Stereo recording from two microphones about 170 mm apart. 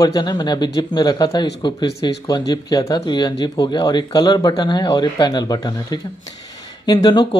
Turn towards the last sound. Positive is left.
turn(degrees=25)  # may be behind; listen again after turning